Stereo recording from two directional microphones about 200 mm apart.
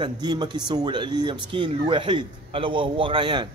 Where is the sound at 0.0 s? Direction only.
20° right (ahead or behind).